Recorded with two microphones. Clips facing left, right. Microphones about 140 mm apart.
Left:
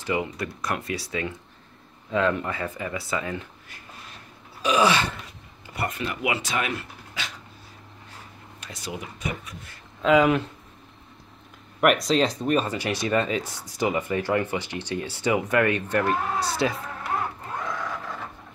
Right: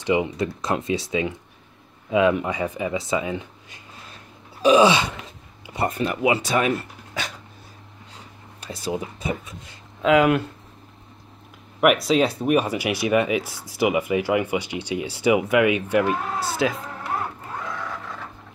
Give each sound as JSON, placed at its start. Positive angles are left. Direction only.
{"t": 0.0, "sound": "speech", "side_deg": -20}
{"t": 4.6, "sound": "speech", "side_deg": -25}
{"t": 5.9, "sound": "speech", "side_deg": -35}
{"t": 8.5, "sound": "speech", "side_deg": -30}
{"t": 10.0, "sound": "speech", "side_deg": -5}
{"t": 11.8, "sound": "speech", "side_deg": -5}